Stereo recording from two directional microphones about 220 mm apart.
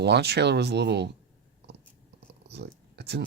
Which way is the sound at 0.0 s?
50° right (ahead or behind).